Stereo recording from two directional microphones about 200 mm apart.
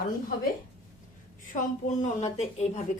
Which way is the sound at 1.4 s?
40° left (ahead or behind).